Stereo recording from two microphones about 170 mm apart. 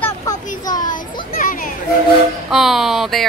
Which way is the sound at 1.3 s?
55° left (ahead or behind).